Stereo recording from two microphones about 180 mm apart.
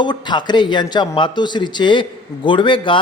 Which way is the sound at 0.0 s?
25° left (ahead or behind).